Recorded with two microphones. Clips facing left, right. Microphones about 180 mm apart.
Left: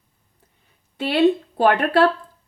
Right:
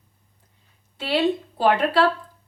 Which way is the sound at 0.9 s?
55° left (ahead or behind).